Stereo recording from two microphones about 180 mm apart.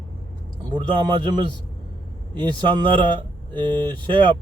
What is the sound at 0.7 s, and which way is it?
Speech, 25° right (ahead or behind).